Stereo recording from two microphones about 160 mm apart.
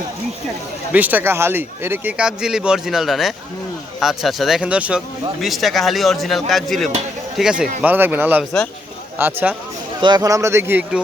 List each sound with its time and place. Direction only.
0.9 s speech: 10° right (ahead or behind)
10.0 s speech: 25° right (ahead or behind)